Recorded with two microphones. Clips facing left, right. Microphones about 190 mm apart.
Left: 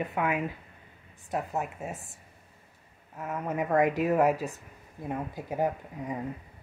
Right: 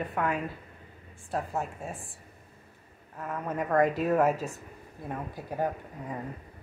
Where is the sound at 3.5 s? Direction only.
10° left (ahead or behind).